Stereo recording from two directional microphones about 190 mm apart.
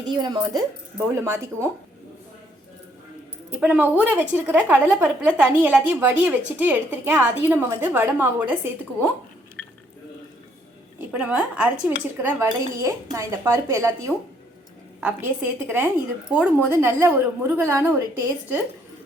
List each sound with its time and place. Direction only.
0.0 s a woman's voice: 20° right (ahead or behind)
3.5 s a woman's voice: 10° right (ahead or behind)
11.1 s a woman's voice: 5° right (ahead or behind)